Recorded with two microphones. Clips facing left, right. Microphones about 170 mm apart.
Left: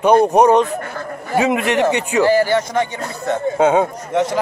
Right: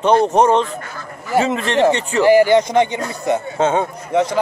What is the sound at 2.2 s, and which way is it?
Speech, 15° right (ahead or behind).